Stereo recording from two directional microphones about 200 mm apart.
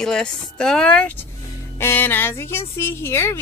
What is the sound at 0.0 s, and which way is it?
Speech, 5° left (ahead or behind).